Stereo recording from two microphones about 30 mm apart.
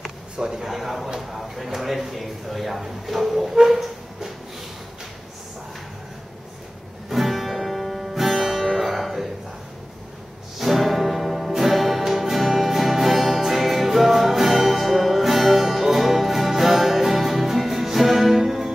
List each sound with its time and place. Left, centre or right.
0.4 s a man's voice: centre
0.7 s speech: centre
7.1 s music: centre
10.6 s music: centre